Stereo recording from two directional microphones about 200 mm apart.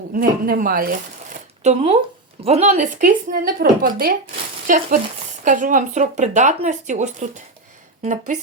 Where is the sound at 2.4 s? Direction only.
35° right (ahead or behind).